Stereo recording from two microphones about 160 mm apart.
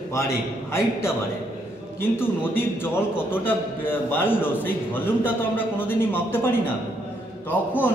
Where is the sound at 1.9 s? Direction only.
15° left (ahead or behind).